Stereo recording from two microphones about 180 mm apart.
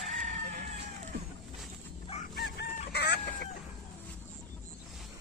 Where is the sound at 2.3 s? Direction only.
65° left (ahead or behind).